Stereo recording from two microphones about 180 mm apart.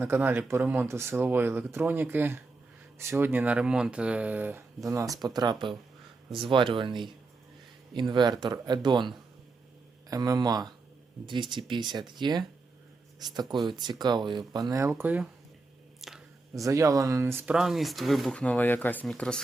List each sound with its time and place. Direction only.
0.0 s speech: 10° right (ahead or behind)
16.0 s squish: centre (ahead or behind)
16.6 s speech: 15° right (ahead or behind); by 19.4 s 5° left (ahead or behind)